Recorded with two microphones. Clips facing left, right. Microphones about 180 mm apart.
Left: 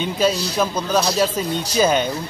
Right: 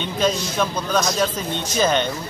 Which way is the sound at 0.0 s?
5° left (ahead or behind).